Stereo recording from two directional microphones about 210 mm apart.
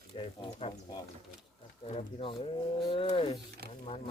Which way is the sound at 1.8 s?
30° left (ahead or behind).